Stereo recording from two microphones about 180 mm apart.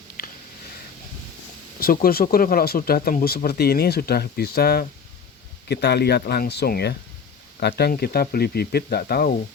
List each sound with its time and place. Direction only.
1.8 s speech: 55° left (ahead or behind)